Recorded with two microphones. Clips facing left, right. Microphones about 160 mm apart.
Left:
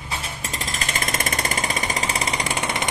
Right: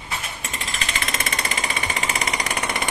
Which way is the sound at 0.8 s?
45° left (ahead or behind).